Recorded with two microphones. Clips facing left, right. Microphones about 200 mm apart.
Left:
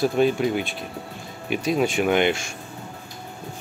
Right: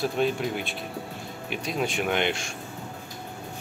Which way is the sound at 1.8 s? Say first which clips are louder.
Left 5 dB; centre (ahead or behind).